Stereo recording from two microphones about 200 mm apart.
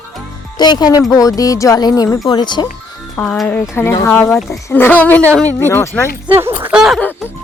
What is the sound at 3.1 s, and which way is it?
Speech, 10° left (ahead or behind).